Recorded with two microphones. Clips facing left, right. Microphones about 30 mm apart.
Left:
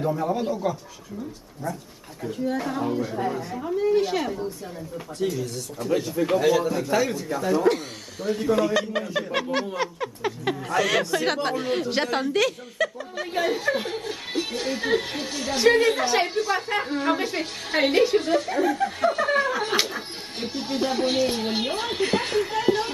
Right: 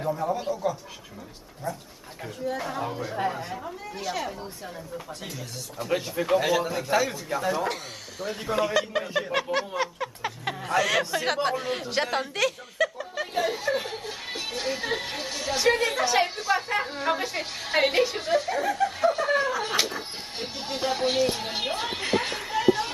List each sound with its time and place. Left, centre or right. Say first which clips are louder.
0.0 s a man's voice: left 3 dB; centre
2.3 s a woman's voice: left 3 dB; centre
3.2 s speech: left 1 dB; centre
3.8 s a man's voice: left 11 dB; centre
4.9 s a woman's voice: left 14 dB; centre
5.9 s a man's voice: left 2 dB; centre
8.5 s a man's voice: left 4 dB; centre
9.3 s a woman's voice: left 2 dB; centre